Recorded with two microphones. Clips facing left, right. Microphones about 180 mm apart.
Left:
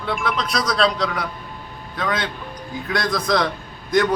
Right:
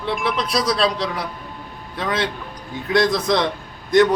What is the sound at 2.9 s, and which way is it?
Speech, 25° right (ahead or behind).